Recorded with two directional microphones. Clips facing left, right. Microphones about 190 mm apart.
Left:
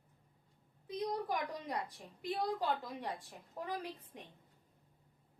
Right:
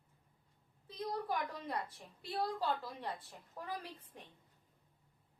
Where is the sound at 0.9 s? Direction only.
15° left (ahead or behind).